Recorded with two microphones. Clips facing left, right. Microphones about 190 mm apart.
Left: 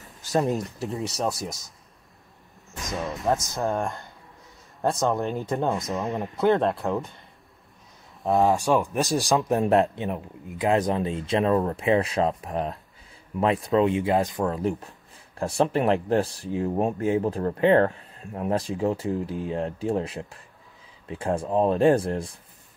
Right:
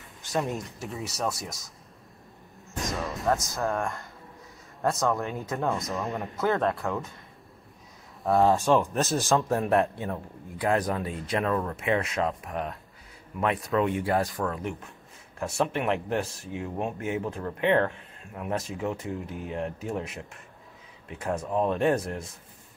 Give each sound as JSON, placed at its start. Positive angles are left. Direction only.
{"t": 0.6, "sound": "speech", "side_deg": 0}
{"t": 2.8, "sound": "music", "side_deg": 0}
{"t": 3.3, "sound": "speech", "side_deg": 0}
{"t": 5.1, "sound": "speech", "side_deg": 0}
{"t": 6.4, "sound": "speech", "side_deg": 25}
{"t": 8.2, "sound": "speech", "side_deg": 15}